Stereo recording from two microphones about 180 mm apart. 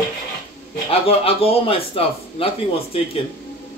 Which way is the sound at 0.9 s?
35° left (ahead or behind).